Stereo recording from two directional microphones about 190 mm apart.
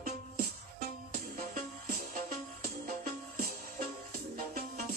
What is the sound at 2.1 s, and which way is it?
Music, 45° right (ahead or behind).